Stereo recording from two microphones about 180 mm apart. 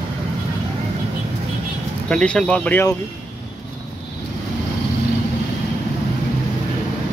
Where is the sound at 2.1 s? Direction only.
5° left (ahead or behind).